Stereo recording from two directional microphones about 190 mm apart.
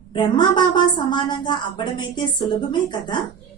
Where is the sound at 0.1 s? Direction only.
25° left (ahead or behind).